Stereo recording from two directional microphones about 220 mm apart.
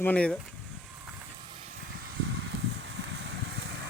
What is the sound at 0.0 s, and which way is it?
Speech, 5° left (ahead or behind).